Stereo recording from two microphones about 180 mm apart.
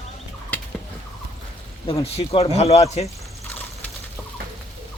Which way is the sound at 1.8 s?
35° left (ahead or behind).